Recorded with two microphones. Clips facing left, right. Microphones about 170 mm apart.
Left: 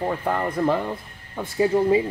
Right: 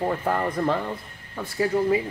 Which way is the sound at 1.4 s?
25° left (ahead or behind).